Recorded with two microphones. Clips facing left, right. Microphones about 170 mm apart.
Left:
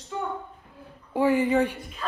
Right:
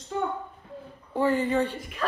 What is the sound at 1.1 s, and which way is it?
Speech, 15° left (ahead or behind).